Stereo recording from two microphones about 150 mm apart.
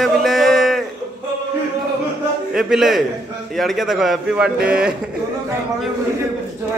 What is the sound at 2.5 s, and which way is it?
A man's voice, 5° right (ahead or behind).